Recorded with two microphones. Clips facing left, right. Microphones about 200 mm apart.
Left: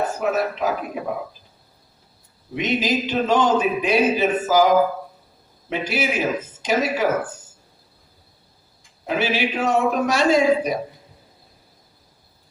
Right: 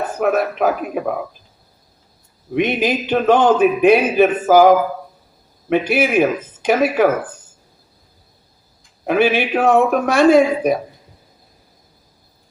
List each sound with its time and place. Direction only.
0.2 s a man's voice: 60° right (ahead or behind)
2.6 s a man's voice: 55° right (ahead or behind)
9.0 s a man's voice: 55° right (ahead or behind)